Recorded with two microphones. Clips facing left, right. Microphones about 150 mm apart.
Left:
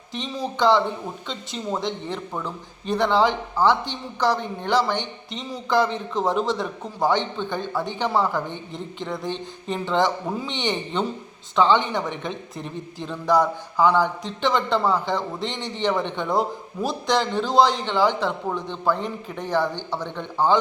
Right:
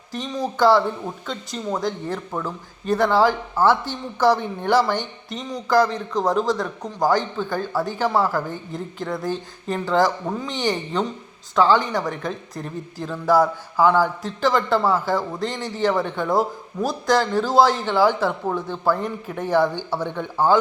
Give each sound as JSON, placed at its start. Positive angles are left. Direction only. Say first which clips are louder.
{"t": 1.3, "sound": "speech", "louder": "right 2 dB", "side_deg": 0}
{"t": 5.6, "sound": "a man's voice", "louder": "right 3 dB", "side_deg": 0}